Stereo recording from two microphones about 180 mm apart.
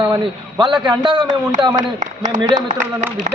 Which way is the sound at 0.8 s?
25° right (ahead or behind).